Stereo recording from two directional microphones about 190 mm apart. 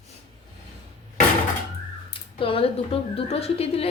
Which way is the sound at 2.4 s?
30° left (ahead or behind).